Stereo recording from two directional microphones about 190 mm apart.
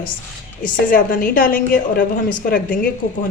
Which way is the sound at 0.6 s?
45° left (ahead or behind).